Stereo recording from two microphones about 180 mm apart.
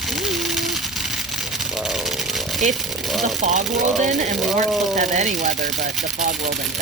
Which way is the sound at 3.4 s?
40° right (ahead or behind).